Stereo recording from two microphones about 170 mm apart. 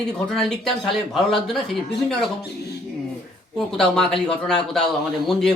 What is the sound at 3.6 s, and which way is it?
Speech, 5° left (ahead or behind).